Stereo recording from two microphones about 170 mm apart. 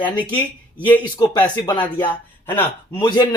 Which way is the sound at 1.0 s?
25° left (ahead or behind).